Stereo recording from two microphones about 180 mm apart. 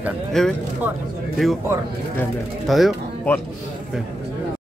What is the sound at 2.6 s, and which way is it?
Speech, centre (ahead or behind).